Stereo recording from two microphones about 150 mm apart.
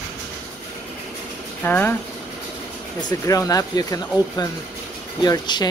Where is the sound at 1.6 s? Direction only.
10° left (ahead or behind).